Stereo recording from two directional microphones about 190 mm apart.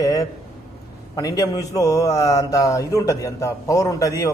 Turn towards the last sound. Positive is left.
turn(degrees=15)  # may be behind; listen again after turning